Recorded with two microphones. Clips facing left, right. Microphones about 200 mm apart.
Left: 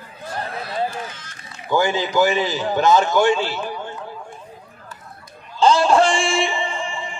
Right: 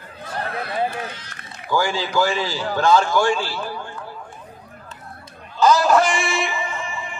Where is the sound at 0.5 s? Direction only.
60° right (ahead or behind).